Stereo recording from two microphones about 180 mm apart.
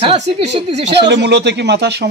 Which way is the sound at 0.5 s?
70° right (ahead or behind).